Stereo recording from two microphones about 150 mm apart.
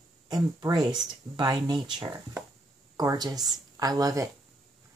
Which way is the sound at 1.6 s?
30° right (ahead or behind).